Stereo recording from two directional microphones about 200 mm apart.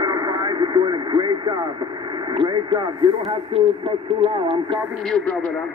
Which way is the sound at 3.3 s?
25° right (ahead or behind).